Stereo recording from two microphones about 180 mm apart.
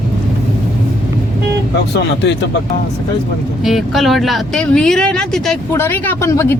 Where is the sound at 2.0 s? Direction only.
75° left (ahead or behind).